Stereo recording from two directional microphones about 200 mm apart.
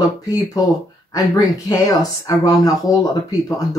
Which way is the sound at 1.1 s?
20° left (ahead or behind).